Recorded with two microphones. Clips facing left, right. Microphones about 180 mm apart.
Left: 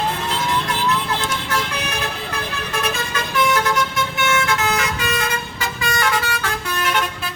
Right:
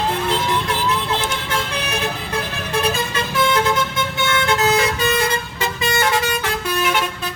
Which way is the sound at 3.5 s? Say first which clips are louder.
Right 1 dB; 25° right (ahead or behind).